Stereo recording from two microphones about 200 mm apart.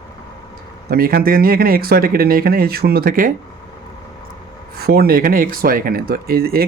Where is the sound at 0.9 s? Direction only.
50° right (ahead or behind).